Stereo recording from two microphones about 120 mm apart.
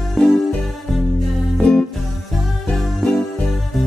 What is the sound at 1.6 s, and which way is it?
Music, 5° left (ahead or behind).